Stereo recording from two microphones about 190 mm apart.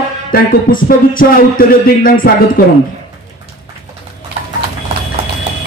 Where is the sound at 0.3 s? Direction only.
50° left (ahead or behind).